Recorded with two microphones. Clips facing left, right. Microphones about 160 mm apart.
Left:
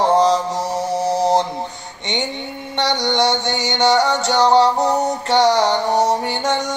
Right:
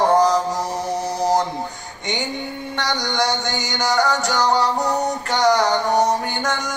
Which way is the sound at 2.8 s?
25° left (ahead or behind).